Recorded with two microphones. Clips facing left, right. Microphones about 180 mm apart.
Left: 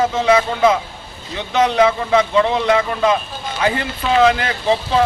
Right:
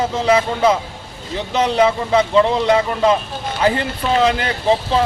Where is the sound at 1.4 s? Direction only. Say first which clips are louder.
Left 1 dB; 30° right (ahead or behind).